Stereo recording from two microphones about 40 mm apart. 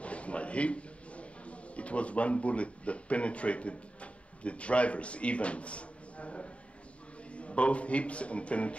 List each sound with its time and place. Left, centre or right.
0.0 s a man's voice: left